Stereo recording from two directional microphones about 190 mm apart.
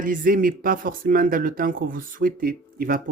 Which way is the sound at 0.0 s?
45° right (ahead or behind).